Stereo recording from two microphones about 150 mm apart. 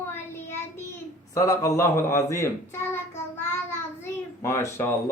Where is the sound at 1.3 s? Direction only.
20° left (ahead or behind).